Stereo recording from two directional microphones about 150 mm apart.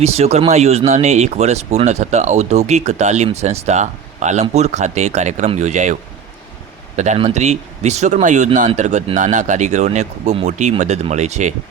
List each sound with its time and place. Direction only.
0.0 s speech: 45° right (ahead or behind)